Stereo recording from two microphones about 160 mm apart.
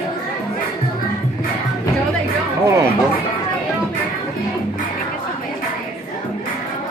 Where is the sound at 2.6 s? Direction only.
20° right (ahead or behind).